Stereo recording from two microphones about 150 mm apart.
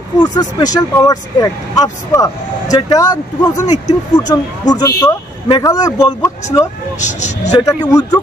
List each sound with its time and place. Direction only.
0.2 s speech: 30° left (ahead or behind)
7.0 s speech: 55° left (ahead or behind)
7.5 s speech: 25° left (ahead or behind)